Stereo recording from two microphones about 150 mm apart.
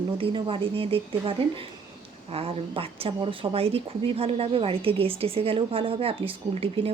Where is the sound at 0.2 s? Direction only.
35° right (ahead or behind).